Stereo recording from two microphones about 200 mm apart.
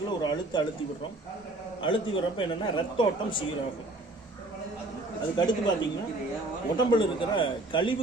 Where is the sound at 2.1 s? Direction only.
25° left (ahead or behind).